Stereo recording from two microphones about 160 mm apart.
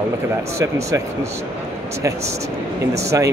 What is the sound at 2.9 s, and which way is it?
Speech, 20° right (ahead or behind).